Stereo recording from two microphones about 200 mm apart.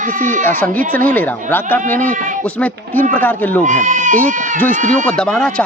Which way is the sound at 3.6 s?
40° right (ahead or behind).